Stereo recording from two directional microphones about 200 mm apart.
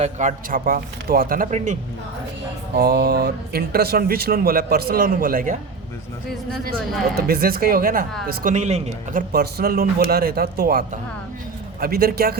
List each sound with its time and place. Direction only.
0.0 s speech: 35° right (ahead or behind)
2.7 s speech: 50° right (ahead or behind)
7.2 s speech: 50° right (ahead or behind)
9.3 s speech: 50° right (ahead or behind)